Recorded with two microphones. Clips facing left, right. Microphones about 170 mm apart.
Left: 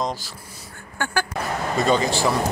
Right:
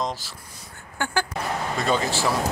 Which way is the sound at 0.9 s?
15° right (ahead or behind).